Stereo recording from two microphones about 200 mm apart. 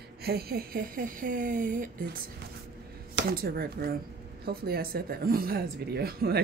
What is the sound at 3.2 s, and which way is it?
Speech, 50° right (ahead or behind).